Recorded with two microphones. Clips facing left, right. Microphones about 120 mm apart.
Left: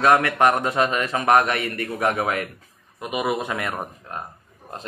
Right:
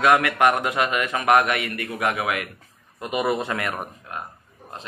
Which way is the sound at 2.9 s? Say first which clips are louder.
Right 1 dB; 15° left (ahead or behind).